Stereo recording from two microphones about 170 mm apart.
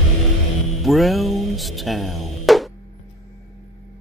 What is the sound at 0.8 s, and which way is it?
Music, centre (ahead or behind).